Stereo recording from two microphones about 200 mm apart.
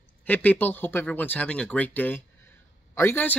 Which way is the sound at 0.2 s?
10° left (ahead or behind).